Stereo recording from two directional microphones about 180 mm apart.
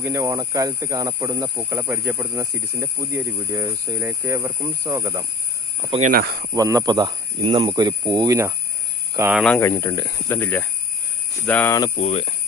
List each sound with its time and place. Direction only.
0.0 s speech: 15° right (ahead or behind)
6.0 s speech: 55° right (ahead or behind)
6.5 s speech: 20° right (ahead or behind)
9.1 s speech: 10° right (ahead or behind)
9.4 s speech: 10° left (ahead or behind)
11.9 s speech: 35° left (ahead or behind)